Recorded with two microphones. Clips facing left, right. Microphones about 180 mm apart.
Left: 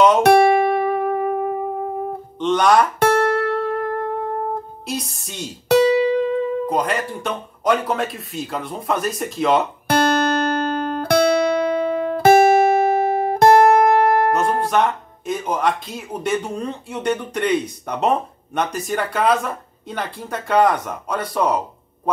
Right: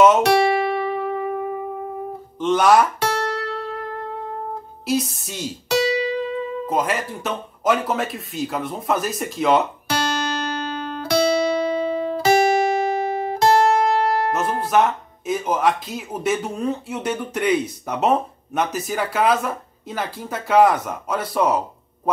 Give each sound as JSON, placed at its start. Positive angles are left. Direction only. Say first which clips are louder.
{"t": 0.2, "sound": "music", "louder": "left 4 dB", "side_deg": 55}
{"t": 2.3, "sound": "speech", "louder": "even", "side_deg": -5}
{"t": 3.0, "sound": "music", "louder": "left 7 dB", "side_deg": 55}
{"t": 4.8, "sound": "speech", "louder": "right 6 dB", "side_deg": -5}
{"t": 5.7, "sound": "music", "louder": "left 6 dB", "side_deg": 55}
{"t": 6.7, "sound": "speech", "louder": "left 1 dB", "side_deg": 0}
{"t": 9.8, "sound": "guitar", "louder": "left 6 dB", "side_deg": 55}
{"t": 14.3, "sound": "speech", "louder": "left 1 dB", "side_deg": -5}